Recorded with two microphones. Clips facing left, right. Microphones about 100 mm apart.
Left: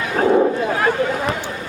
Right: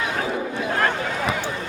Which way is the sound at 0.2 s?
45° left (ahead or behind).